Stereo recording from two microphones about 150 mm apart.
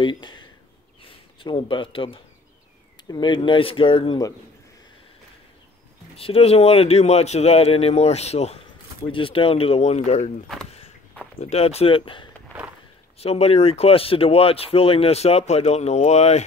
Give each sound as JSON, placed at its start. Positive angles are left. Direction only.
{"t": 0.0, "sound": "speech", "side_deg": 30}
{"t": 6.1, "sound": "speech", "side_deg": 40}
{"t": 9.0, "sound": "speech", "side_deg": 35}
{"t": 11.3, "sound": "speech", "side_deg": 40}